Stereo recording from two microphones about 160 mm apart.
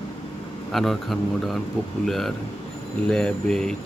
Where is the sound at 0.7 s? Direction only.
Centre (ahead or behind).